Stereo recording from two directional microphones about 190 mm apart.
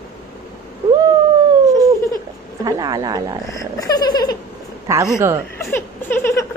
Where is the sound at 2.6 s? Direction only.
20° right (ahead or behind).